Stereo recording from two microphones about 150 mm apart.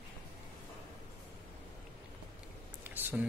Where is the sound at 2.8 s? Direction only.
10° right (ahead or behind).